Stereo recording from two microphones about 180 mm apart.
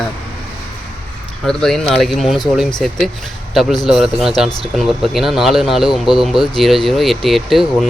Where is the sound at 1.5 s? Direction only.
5° left (ahead or behind).